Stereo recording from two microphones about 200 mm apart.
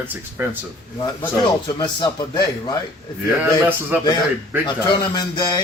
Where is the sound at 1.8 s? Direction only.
20° left (ahead or behind).